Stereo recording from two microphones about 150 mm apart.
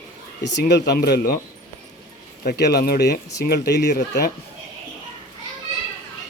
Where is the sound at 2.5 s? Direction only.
90° left.